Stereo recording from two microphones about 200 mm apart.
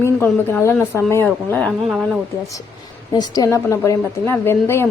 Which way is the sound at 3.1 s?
20° left (ahead or behind).